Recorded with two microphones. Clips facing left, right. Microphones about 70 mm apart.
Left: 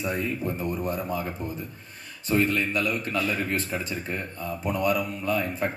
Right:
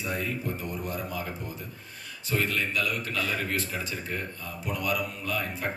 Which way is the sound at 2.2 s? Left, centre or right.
Left.